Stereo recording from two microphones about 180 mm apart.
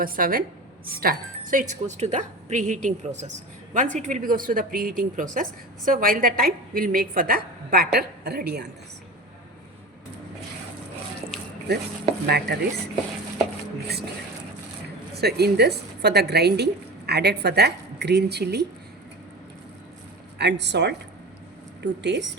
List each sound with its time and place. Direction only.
0.0 s speech: 50° right (ahead or behind)
11.3 s a sound: 5° left (ahead or behind)
12.2 s a woman's voice: 65° right (ahead or behind)
15.1 s a woman's voice: 65° right (ahead or behind)
20.4 s speech: 75° right (ahead or behind)